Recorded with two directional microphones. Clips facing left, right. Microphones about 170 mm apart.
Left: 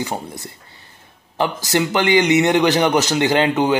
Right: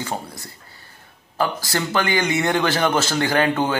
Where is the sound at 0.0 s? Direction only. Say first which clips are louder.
Left 3 dB; 20° left (ahead or behind).